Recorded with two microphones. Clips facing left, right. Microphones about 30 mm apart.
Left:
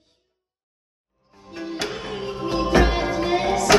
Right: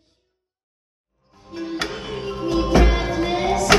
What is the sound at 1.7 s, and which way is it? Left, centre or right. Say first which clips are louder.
Music: right 1 dB; right.